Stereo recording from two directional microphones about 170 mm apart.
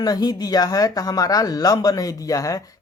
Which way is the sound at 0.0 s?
20° left (ahead or behind).